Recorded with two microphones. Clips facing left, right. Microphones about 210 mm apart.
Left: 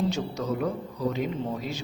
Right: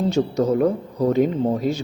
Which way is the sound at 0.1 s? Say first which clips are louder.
Right 10 dB; 45° right (ahead or behind).